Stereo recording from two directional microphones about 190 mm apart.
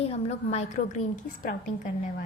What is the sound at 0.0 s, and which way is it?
A woman's voice, 35° left (ahead or behind).